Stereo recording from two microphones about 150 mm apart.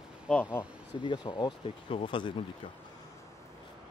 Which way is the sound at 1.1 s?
30° left (ahead or behind).